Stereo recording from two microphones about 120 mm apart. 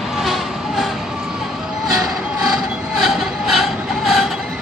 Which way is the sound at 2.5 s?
5° right (ahead or behind).